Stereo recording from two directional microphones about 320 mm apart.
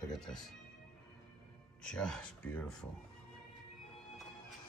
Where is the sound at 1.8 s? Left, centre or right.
Centre.